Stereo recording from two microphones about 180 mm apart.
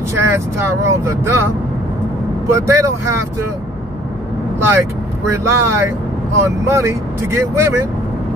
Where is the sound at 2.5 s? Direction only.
15° right (ahead or behind).